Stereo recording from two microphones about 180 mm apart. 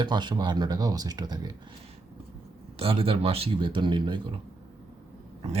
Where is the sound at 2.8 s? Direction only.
30° right (ahead or behind).